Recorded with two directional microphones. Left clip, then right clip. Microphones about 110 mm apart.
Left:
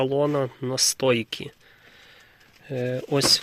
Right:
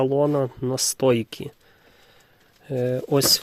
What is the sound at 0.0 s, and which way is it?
Speech, 55° right (ahead or behind).